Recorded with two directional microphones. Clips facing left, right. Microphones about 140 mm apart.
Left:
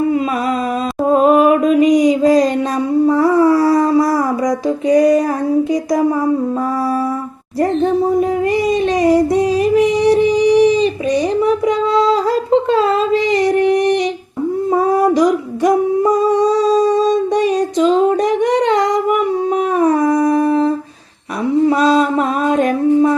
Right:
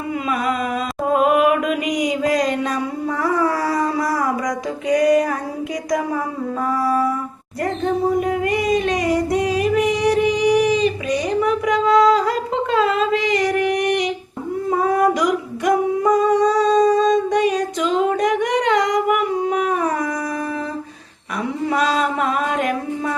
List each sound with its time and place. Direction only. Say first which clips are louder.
1.1 s mantra: left 5 dB; 35° left (ahead or behind)
3.1 s a sound: left 7 dB; 30° left (ahead or behind)
4.9 s female singing: left 4 dB; 30° left (ahead or behind)
8.7 s music: left 7 dB; 30° left (ahead or behind)
12.7 s a sound: left 4 dB; 30° left (ahead or behind)
14.7 s female singing: left 3 dB; 30° left (ahead or behind)
17.3 s singing: left 4 dB; 30° left (ahead or behind)
20.0 s howl: left 11 dB; 30° left (ahead or behind)
21.7 s mantra: left 4 dB; 30° left (ahead or behind)
22.5 s female singing: left 9 dB; 30° left (ahead or behind)